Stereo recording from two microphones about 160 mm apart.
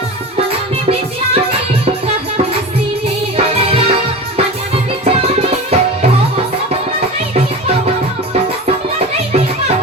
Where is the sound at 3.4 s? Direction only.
40° right (ahead or behind).